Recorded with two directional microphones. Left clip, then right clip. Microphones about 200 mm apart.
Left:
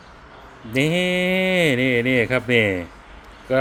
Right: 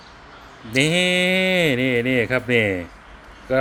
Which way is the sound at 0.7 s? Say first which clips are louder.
Right 2 dB; 5° left (ahead or behind).